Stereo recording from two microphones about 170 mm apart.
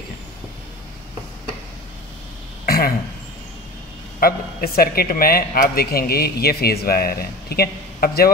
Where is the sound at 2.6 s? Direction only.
60° left (ahead or behind).